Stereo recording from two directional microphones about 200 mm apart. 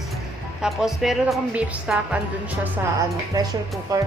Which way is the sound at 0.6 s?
Centre (ahead or behind).